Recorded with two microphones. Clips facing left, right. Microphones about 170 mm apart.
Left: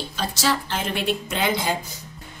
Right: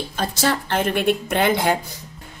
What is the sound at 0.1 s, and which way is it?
A woman's voice, 55° right (ahead or behind).